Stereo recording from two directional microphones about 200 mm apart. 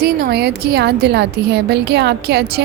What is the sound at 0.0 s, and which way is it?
A woman's voice, 55° right (ahead or behind).